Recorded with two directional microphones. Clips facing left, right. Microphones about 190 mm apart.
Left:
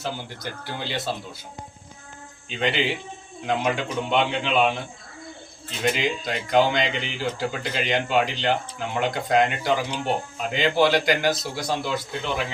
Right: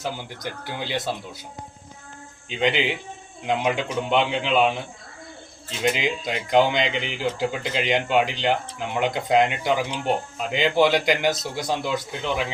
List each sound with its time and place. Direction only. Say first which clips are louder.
0.0 s a man's voice: right 1 dB; 15° right (ahead or behind)
2.5 s a man's voice: right 2 dB; 15° right (ahead or behind)
5.8 s a man's voice: right 1 dB; 20° right (ahead or behind)